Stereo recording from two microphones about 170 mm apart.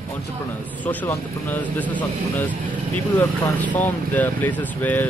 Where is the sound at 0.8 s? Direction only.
10° left (ahead or behind).